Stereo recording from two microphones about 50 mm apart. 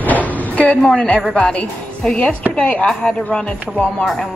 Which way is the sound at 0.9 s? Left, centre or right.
Left.